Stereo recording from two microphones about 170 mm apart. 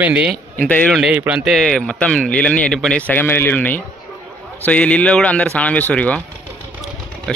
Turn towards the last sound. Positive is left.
turn(degrees=5)  # may be behind; listen again after turning